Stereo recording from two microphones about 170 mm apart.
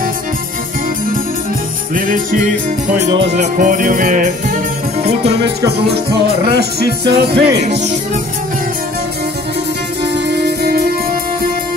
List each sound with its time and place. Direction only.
2.0 s music: 55° right (ahead or behind)
5.0 s music: 40° right (ahead or behind)
6.2 s music: 75° right (ahead or behind)
10.1 s music: 75° right (ahead or behind)